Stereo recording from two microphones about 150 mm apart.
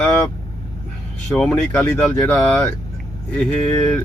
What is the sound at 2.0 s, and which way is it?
Speech, 5° left (ahead or behind).